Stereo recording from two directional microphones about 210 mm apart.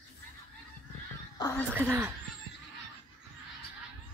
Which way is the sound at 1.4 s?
15° left (ahead or behind).